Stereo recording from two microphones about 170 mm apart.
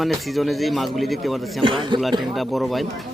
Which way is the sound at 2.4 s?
Centre (ahead or behind).